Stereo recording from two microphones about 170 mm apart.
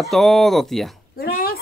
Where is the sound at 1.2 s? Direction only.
60° left (ahead or behind).